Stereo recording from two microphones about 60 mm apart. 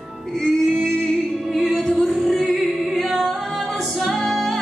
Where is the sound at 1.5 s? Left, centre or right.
Centre.